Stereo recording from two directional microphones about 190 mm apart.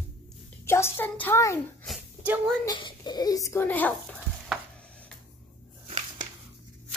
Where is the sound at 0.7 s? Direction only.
15° left (ahead or behind).